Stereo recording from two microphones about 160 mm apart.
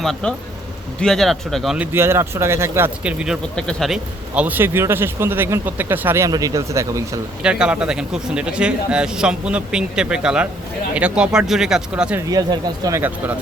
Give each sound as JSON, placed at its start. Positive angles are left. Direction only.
{"t": 0.0, "sound": "a man's voice", "side_deg": 5}
{"t": 7.4, "sound": "a man's voice", "side_deg": -5}
{"t": 12.3, "sound": "speech", "side_deg": -25}
{"t": 13.0, "sound": "speech", "side_deg": -10}